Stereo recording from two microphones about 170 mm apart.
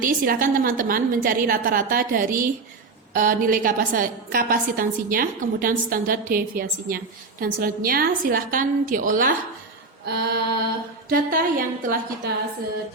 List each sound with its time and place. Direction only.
0.0 s a woman's voice: 55° right (ahead or behind)
10.1 s female singing: 70° right (ahead or behind)
11.1 s a woman's voice: 60° right (ahead or behind)